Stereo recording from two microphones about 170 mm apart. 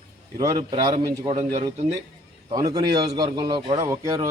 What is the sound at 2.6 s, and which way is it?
Speech, 20° right (ahead or behind).